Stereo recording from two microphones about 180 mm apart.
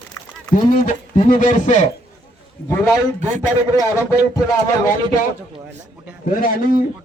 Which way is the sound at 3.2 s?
40° right (ahead or behind).